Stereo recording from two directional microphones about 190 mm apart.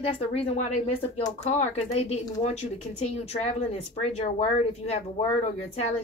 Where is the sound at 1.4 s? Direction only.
35° left (ahead or behind).